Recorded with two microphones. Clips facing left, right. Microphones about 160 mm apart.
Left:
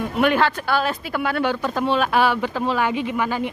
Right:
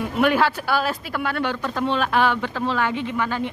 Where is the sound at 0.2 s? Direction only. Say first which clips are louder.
Even; 5° right (ahead or behind).